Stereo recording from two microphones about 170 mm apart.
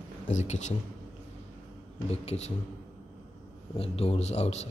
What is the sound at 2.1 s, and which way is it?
Speech, 40° left (ahead or behind).